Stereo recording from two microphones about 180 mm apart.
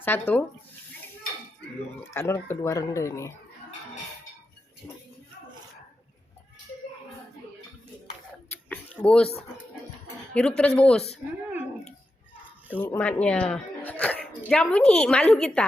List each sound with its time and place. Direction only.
0.0 s speech: 10° left (ahead or behind)
2.1 s speech: 15° left (ahead or behind)
8.4 s a sound: 10° left (ahead or behind)
10.3 s speech: 5° left (ahead or behind)
12.7 s speech: 10° left (ahead or behind)